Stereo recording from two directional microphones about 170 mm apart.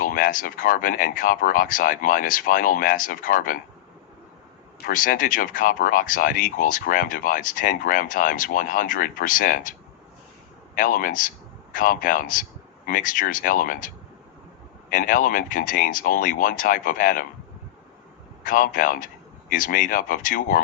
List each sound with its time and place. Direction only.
0.0 s speech: 55° left (ahead or behind)
4.9 s speech: 55° left (ahead or behind)
10.8 s speech: 50° left (ahead or behind)
18.4 s speech: 55° left (ahead or behind)